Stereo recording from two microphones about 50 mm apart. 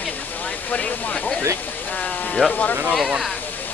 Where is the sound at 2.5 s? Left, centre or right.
Left.